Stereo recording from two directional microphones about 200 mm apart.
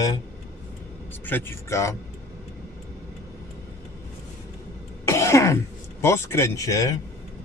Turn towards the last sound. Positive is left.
turn(degrees=15)  # may be behind; listen again after turning